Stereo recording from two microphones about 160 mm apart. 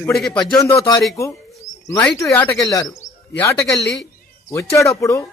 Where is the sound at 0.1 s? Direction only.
Centre (ahead or behind).